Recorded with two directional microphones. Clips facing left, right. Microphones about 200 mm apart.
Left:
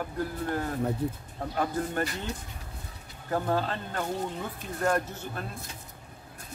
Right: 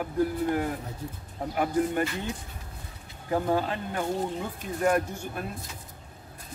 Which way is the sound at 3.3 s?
15° right (ahead or behind).